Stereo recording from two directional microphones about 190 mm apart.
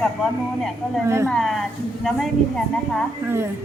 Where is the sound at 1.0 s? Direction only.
15° right (ahead or behind).